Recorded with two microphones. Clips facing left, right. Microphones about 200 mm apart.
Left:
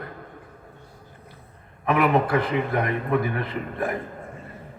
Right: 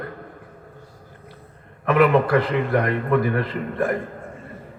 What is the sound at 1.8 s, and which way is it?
A man's voice, 60° right (ahead or behind).